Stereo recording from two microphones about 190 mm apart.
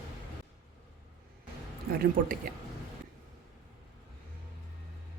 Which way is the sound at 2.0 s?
50° right (ahead or behind).